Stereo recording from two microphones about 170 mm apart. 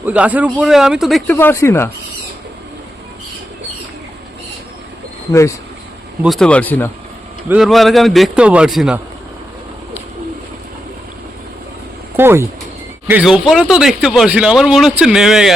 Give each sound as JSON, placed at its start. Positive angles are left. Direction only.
{"t": 0.0, "sound": "speech", "side_deg": -10}
{"t": 1.3, "sound": "speech", "side_deg": 15}
{"t": 5.3, "sound": "speech", "side_deg": 15}
{"t": 6.2, "sound": "speech", "side_deg": 0}
{"t": 7.4, "sound": "speech", "side_deg": -5}
{"t": 12.1, "sound": "speech", "side_deg": -15}